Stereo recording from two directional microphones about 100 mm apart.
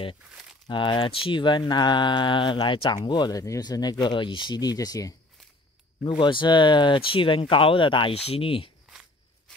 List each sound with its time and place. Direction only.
0.7 s speech: 50° left (ahead or behind); by 5.1 s 35° left (ahead or behind)
6.0 s speech: 55° left (ahead or behind)
8.1 s speech: 85° left; by 8.7 s 65° left (ahead or behind)